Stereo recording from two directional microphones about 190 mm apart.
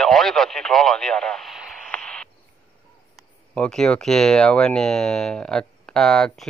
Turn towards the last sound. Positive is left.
turn(degrees=0)  # may be behind; listen again after turning